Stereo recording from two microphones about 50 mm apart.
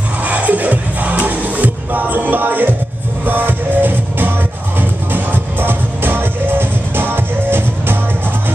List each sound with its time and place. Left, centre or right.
0.2 s music: right